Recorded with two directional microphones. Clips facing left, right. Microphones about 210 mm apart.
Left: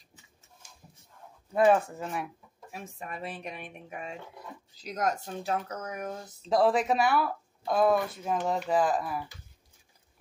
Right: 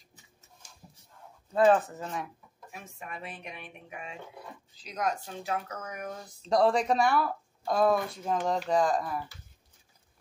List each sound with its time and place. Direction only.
1.5 s speech: 10° left (ahead or behind)
2.7 s speech: 40° left (ahead or behind)
6.5 s speech: 5° left (ahead or behind)